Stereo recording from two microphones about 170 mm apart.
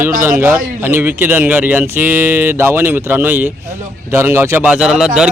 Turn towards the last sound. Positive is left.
turn(degrees=-5)  # may be behind; listen again after turning